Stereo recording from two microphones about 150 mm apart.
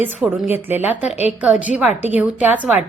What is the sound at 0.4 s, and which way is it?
A woman's voice, 15° right (ahead or behind).